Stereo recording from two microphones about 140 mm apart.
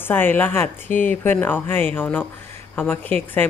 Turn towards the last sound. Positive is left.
turn(degrees=15)  # may be behind; listen again after turning